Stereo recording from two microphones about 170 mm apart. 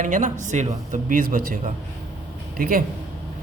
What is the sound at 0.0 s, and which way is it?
A man's voice, 50° right (ahead or behind).